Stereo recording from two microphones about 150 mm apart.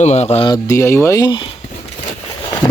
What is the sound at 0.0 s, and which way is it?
Speech, 50° left (ahead or behind).